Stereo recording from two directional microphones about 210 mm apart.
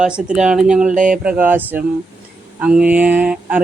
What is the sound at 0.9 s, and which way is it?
Speech, 40° right (ahead or behind).